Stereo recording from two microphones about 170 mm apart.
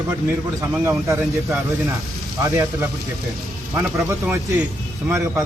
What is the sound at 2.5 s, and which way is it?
A man's voice, 15° right (ahead or behind).